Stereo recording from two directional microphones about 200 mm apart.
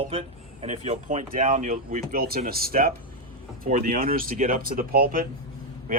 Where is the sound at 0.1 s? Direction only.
30° right (ahead or behind).